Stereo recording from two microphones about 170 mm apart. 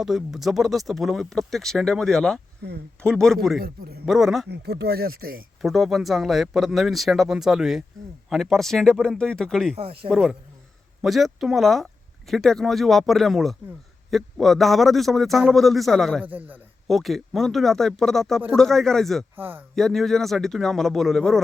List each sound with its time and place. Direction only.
0.0 s speech: 5° right (ahead or behind)
4.4 s speech: 75° right (ahead or behind)
5.6 s speech: centre (ahead or behind)
9.7 s speech: 35° right (ahead or behind)
10.1 s speech: centre (ahead or behind)
16.2 s a man's voice: 10° right (ahead or behind)
16.9 s speech: centre (ahead or behind)
19.4 s speech: 10° right (ahead or behind)
19.7 s speech: centre (ahead or behind)